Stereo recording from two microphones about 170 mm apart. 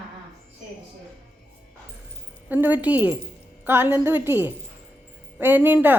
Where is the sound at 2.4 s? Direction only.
10° right (ahead or behind).